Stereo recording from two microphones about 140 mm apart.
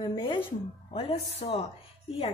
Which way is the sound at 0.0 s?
35° left (ahead or behind).